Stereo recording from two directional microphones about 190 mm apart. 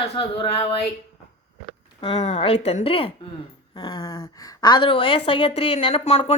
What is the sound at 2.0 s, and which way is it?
A woman's voice, 35° left (ahead or behind).